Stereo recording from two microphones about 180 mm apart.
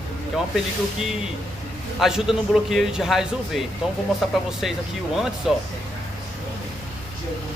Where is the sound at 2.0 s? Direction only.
Centre (ahead or behind).